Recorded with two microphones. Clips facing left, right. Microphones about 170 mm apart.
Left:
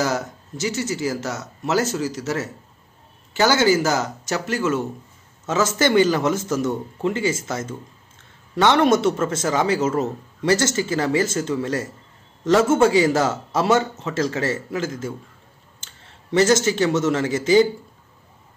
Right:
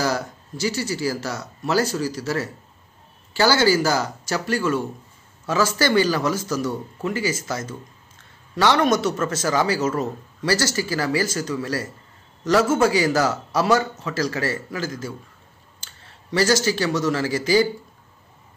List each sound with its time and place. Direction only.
0.0 s a man's voice: 20° left (ahead or behind)